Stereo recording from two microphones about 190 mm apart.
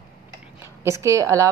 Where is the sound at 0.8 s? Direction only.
15° right (ahead or behind).